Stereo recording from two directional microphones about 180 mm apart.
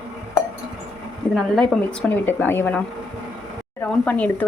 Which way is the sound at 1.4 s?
5° left (ahead or behind).